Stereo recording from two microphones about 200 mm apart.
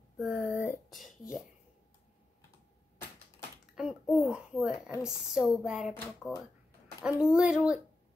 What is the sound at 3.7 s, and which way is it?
A child's voice, centre (ahead or behind).